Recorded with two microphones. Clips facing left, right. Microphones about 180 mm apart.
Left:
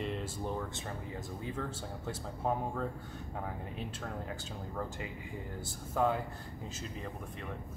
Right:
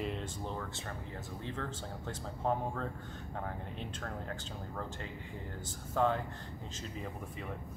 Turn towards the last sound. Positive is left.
turn(degrees=10)  # may be behind; listen again after turning